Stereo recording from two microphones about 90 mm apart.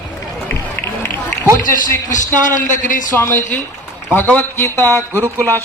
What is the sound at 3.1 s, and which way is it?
A man's voice, 30° left (ahead or behind).